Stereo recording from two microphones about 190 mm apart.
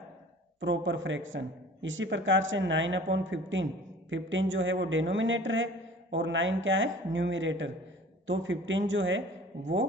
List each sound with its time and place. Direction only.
0.6 s a man's voice: 75° right (ahead or behind)